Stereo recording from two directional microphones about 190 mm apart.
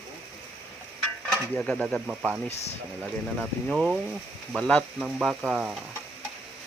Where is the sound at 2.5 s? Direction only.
35° left (ahead or behind).